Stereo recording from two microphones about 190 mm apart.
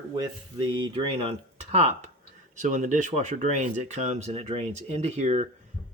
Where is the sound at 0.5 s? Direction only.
25° right (ahead or behind).